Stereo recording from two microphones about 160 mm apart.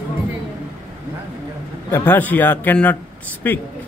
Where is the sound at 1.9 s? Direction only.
15° left (ahead or behind).